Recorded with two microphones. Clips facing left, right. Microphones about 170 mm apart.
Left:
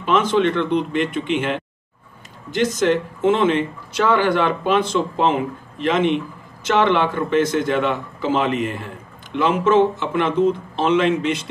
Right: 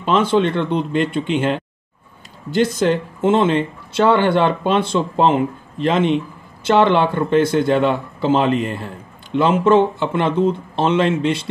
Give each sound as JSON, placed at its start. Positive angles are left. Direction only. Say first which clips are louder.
{"t": 0.0, "sound": "speech", "louder": "right 1 dB", "side_deg": -30}